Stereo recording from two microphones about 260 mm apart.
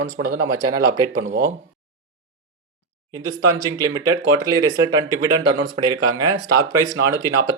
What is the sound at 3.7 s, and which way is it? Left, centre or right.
Speech, right.